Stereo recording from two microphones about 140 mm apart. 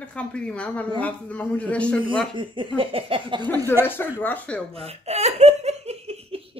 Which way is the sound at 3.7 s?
15° left (ahead or behind).